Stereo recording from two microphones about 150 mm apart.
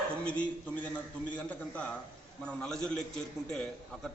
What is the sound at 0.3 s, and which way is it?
A man's voice, 10° left (ahead or behind).